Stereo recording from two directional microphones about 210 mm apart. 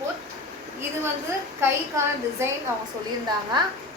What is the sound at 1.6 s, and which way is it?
Speech, 10° right (ahead or behind).